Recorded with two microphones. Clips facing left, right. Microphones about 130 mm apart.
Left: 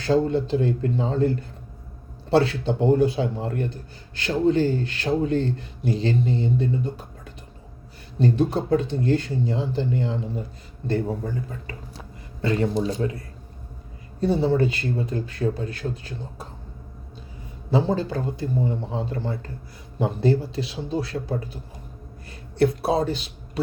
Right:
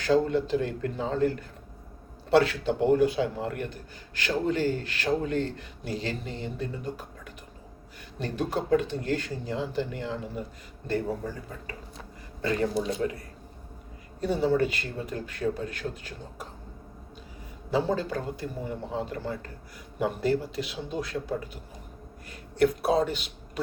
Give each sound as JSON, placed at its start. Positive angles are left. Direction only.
{"t": 0.0, "sound": "a man's voice", "side_deg": 30}
{"t": 11.9, "sound": "a sound", "side_deg": 30}
{"t": 12.8, "sound": "speech", "side_deg": 30}
{"t": 14.2, "sound": "a man's voice", "side_deg": 30}
{"t": 17.7, "sound": "a man's voice", "side_deg": 30}